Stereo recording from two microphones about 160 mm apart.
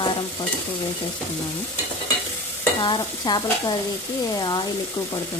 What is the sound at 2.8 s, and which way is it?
Stir, 30° left (ahead or behind).